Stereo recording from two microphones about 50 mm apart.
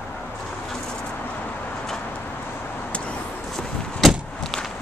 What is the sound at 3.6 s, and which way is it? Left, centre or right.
Walk, centre.